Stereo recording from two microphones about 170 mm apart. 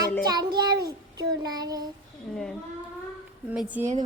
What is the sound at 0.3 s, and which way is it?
Child singing, 25° right (ahead or behind).